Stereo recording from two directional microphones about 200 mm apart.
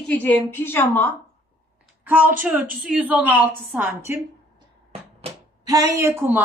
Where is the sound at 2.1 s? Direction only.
10° right (ahead or behind).